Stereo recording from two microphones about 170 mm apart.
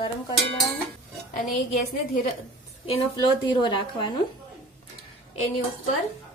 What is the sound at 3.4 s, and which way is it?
Speech, 30° left (ahead or behind).